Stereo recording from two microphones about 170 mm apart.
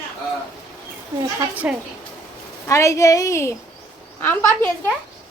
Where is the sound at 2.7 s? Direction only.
15° left (ahead or behind).